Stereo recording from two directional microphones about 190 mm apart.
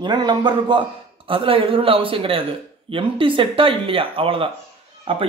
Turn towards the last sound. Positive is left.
turn(degrees=-30)  # may be behind; listen again after turning